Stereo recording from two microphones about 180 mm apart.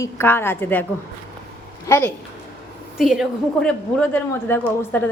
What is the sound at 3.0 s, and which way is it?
A woman's voice, centre (ahead or behind).